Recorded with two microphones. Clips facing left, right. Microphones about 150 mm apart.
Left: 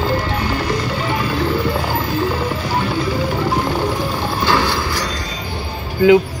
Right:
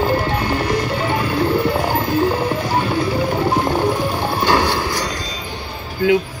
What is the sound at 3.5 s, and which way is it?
Music, 15° right (ahead or behind).